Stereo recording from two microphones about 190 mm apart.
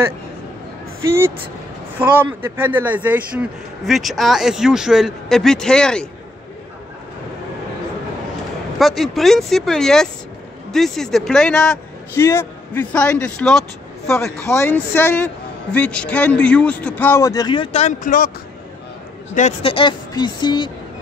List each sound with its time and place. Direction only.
1.0 s speech: 15° right (ahead or behind); by 6.0 s 5° left (ahead or behind)
8.7 s speech: centre (ahead or behind)
14.4 s a man's voice: 15° left (ahead or behind)
17.9 s speech: 45° left (ahead or behind)
19.3 s speech: 35° left (ahead or behind)